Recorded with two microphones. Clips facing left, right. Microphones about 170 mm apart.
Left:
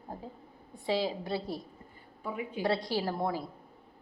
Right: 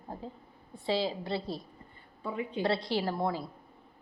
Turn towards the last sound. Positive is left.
turn(degrees=10)  # may be behind; listen again after turning